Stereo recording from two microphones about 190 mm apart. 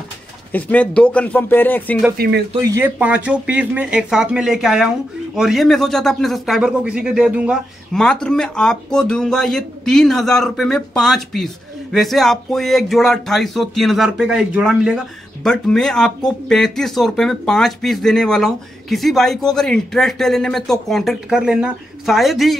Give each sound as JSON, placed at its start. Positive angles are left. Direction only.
{"t": 0.5, "sound": "speech", "side_deg": 10}
{"t": 2.1, "sound": "speech", "side_deg": -55}
{"t": 2.7, "sound": "speech", "side_deg": -10}